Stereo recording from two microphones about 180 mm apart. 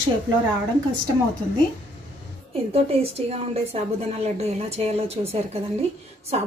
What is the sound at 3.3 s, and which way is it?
A woman's voice, 35° right (ahead or behind).